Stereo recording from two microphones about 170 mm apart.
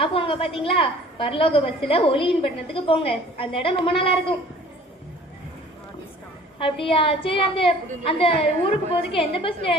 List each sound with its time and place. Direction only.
0.0 s a woman's voice: 30° left (ahead or behind)
6.6 s a woman's voice: 30° left (ahead or behind)